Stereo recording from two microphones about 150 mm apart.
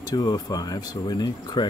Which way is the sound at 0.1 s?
25° left (ahead or behind).